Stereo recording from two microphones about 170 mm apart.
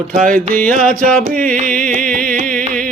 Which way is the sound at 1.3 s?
55° right (ahead or behind).